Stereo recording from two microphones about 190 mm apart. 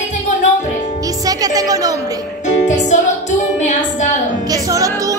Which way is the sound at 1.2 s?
20° right (ahead or behind).